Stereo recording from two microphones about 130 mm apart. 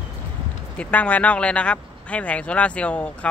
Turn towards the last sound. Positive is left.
turn(degrees=10)  # may be behind; listen again after turning